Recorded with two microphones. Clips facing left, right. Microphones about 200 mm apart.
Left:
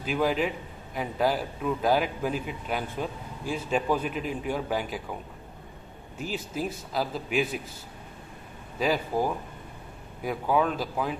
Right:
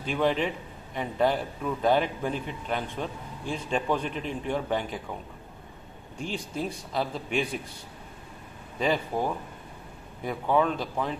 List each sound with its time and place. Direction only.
0.0 s a man's voice: 5° left (ahead or behind)
6.1 s a man's voice: 5° left (ahead or behind)
8.7 s a man's voice: 5° left (ahead or behind)